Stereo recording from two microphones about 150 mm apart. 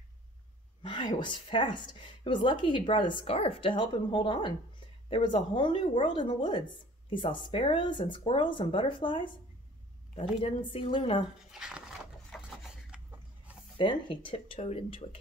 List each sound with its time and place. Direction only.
0.8 s a woman's voice: 35° left (ahead or behind)
11.5 s a sound: 5° right (ahead or behind)
12.4 s filing: 5° right (ahead or behind)
13.7 s a woman's voice: 35° left (ahead or behind)